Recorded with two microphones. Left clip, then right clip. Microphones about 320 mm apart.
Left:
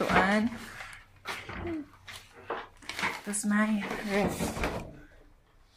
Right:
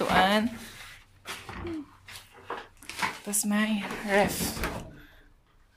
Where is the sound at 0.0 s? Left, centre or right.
Centre.